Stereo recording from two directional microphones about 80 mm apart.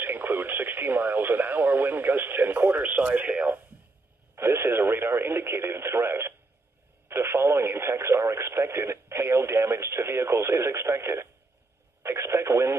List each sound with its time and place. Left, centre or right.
0.0 s speech: right
4.4 s speech: right